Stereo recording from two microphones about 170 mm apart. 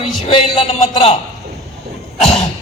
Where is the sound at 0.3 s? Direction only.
30° left (ahead or behind).